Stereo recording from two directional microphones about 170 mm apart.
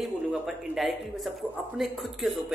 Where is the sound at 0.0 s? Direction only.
Centre (ahead or behind).